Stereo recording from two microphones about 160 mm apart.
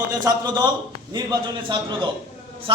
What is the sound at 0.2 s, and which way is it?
A man's voice, 25° right (ahead or behind).